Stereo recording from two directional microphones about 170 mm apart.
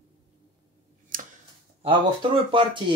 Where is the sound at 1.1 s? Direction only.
55° right (ahead or behind).